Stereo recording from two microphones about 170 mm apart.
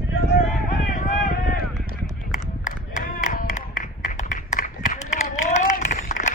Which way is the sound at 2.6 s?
50° left (ahead or behind).